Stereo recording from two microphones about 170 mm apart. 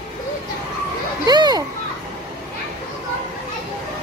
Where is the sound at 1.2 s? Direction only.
25° right (ahead or behind).